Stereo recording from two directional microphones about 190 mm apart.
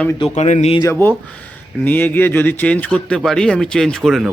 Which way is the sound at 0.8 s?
15° left (ahead or behind).